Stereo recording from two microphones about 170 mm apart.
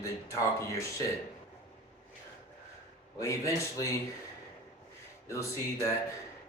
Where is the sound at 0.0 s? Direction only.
20° left (ahead or behind).